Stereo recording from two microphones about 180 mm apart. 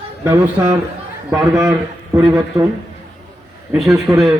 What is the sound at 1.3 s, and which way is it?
A man's voice, 20° right (ahead or behind).